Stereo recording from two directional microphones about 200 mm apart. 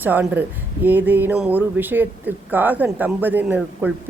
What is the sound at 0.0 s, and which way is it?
Speech, 10° right (ahead or behind).